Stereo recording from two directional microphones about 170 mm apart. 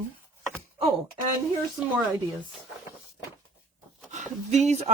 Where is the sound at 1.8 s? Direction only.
5° right (ahead or behind).